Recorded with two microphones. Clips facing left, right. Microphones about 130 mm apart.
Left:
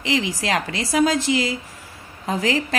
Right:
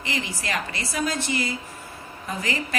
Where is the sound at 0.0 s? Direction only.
90° left.